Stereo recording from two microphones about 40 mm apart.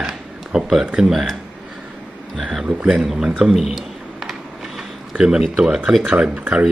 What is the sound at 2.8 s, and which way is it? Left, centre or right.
Speech, centre.